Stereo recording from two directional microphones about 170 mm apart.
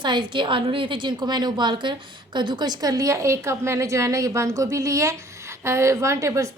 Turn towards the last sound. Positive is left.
turn(degrees=-15)  # may be behind; listen again after turning